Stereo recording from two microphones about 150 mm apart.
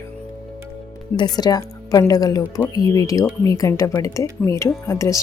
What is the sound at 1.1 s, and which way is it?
A woman's voice, 25° left (ahead or behind).